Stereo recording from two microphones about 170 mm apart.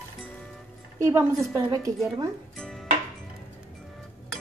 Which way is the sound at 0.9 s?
15° right (ahead or behind).